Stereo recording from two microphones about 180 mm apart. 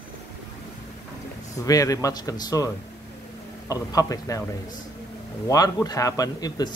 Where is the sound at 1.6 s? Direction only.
20° left (ahead or behind).